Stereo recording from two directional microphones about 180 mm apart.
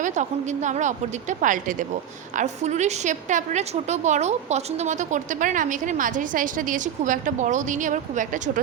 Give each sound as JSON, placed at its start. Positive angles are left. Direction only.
{"t": 0.0, "sound": "a woman's voice", "side_deg": -40}